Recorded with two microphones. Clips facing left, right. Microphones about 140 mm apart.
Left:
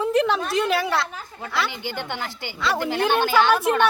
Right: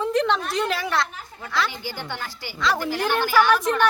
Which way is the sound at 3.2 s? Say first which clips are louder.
Right 2 dB; 25° left (ahead or behind).